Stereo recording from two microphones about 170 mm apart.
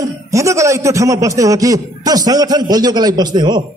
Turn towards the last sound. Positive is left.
turn(degrees=-25)  # may be behind; listen again after turning